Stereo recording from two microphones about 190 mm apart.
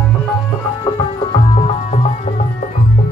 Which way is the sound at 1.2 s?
35° left (ahead or behind).